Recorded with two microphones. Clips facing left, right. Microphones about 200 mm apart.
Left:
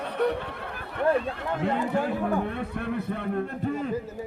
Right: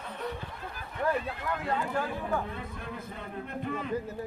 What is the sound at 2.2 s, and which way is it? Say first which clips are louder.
A man's voice: left 6 dB; 70° left (ahead or behind).